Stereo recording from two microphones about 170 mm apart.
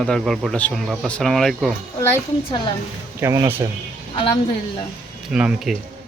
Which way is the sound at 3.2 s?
15° right (ahead or behind).